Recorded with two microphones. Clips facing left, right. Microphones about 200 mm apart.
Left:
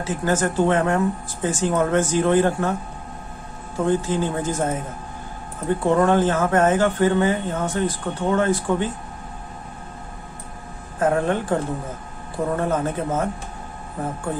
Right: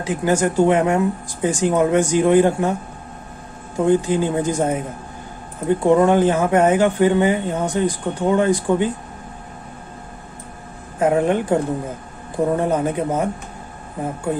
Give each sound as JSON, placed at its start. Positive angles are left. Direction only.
{"t": 0.0, "sound": "speech", "side_deg": -15}
{"t": 3.7, "sound": "speech", "side_deg": -15}
{"t": 11.0, "sound": "speech", "side_deg": -15}